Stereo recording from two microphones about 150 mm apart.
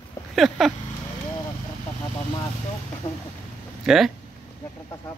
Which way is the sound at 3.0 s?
15° left (ahead or behind).